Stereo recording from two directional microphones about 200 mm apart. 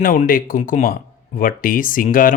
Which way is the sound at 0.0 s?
45° left (ahead or behind).